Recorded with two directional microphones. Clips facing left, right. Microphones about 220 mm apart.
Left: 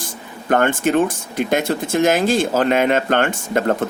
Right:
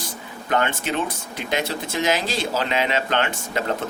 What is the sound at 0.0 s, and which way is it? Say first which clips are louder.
Speech: left 2 dB; 50° left (ahead or behind).